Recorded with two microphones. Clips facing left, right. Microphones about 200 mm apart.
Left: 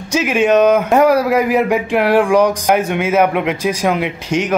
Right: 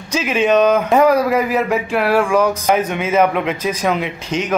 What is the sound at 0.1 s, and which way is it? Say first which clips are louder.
Speech: left 2 dB; 10° left (ahead or behind).